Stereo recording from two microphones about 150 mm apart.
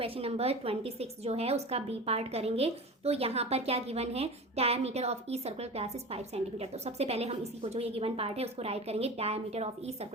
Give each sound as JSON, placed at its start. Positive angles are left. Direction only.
{"t": 0.0, "sound": "a woman's voice", "side_deg": -40}